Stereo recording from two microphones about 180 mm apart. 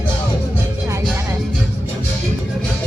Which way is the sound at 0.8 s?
15° right (ahead or behind).